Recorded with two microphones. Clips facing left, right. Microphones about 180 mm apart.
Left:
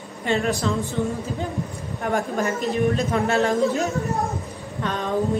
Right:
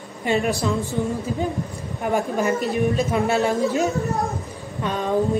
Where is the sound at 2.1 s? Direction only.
10° right (ahead or behind).